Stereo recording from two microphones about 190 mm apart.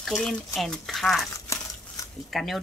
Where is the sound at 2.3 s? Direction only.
Centre (ahead or behind).